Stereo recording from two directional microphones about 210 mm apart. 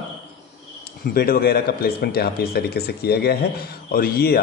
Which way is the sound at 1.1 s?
45° left (ahead or behind).